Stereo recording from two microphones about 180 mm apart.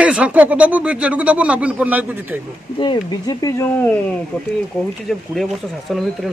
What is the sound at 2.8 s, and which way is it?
Speech, 25° left (ahead or behind).